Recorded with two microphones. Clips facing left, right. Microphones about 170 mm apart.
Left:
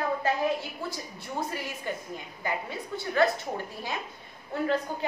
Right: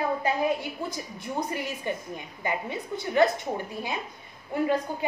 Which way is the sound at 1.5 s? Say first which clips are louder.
Right 3 dB; 20° right (ahead or behind).